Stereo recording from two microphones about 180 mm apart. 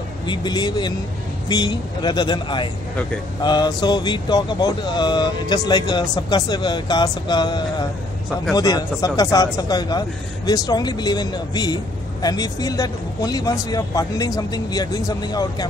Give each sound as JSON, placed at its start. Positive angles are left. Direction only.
{"t": 0.3, "sound": "speech", "side_deg": 25}